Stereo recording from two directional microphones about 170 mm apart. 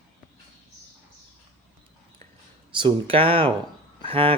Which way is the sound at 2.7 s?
30° right (ahead or behind).